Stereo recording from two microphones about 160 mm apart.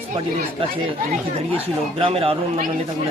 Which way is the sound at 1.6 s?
35° right (ahead or behind).